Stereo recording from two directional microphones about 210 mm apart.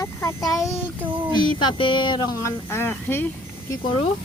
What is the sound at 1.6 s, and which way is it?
Speech, 25° left (ahead or behind).